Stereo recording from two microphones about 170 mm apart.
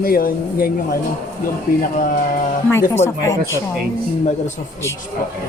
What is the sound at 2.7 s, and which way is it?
Speech, 15° left (ahead or behind).